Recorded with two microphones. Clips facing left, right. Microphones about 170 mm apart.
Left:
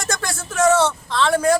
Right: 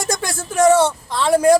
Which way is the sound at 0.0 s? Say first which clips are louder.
Right 3 dB; 10° right (ahead or behind).